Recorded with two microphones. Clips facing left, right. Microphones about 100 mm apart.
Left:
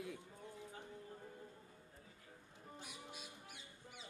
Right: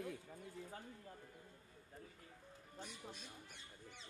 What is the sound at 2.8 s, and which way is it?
Music, 10° left (ahead or behind).